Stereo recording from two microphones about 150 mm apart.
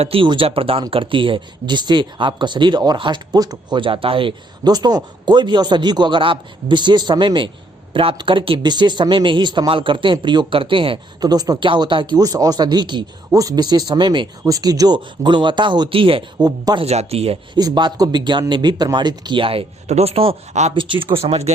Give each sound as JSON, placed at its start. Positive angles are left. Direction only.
{"t": 0.0, "sound": "speech", "side_deg": -35}
{"t": 17.6, "sound": "speech", "side_deg": -30}
{"t": 20.7, "sound": "speech", "side_deg": -35}